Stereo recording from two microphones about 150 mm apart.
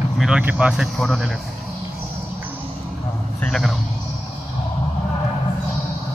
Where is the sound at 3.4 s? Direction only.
Centre (ahead or behind).